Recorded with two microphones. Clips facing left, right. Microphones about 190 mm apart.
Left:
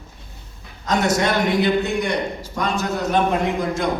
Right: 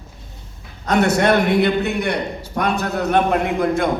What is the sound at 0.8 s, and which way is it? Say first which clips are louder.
A man's voice: right 4 dB; 60° right (ahead or behind).